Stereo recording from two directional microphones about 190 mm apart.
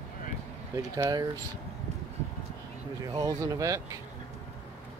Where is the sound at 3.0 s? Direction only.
20° right (ahead or behind).